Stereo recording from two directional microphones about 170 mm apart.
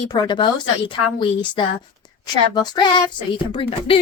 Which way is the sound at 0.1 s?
25° left (ahead or behind).